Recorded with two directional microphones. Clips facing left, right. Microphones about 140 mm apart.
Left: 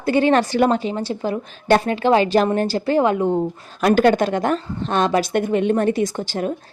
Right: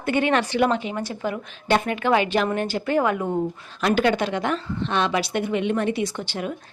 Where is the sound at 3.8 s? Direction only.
45° left (ahead or behind).